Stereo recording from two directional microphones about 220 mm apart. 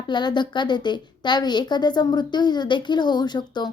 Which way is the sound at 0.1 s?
20° left (ahead or behind).